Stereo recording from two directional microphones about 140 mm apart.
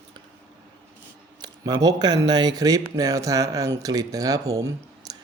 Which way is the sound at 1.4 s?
30° right (ahead or behind).